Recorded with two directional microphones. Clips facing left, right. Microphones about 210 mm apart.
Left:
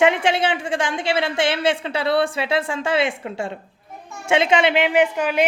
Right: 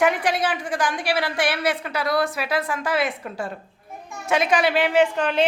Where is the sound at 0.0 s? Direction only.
25° left (ahead or behind).